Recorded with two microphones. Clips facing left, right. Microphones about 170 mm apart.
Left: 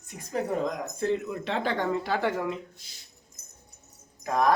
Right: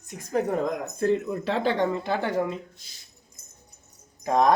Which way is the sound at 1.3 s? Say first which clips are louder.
Right 4 dB; 35° right (ahead or behind).